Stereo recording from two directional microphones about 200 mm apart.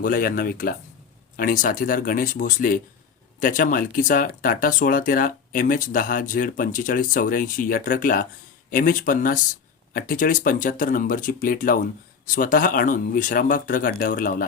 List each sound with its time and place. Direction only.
0.0 s speech: 45° left (ahead or behind)